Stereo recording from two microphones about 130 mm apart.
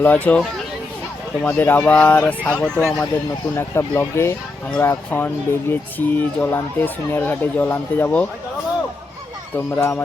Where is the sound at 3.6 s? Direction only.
20° left (ahead or behind).